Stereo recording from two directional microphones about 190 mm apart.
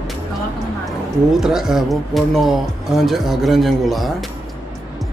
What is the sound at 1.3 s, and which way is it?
Speech, centre (ahead or behind).